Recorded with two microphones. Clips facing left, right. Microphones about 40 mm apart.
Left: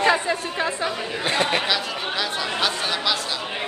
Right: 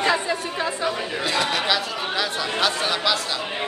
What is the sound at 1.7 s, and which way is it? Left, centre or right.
Speech, centre.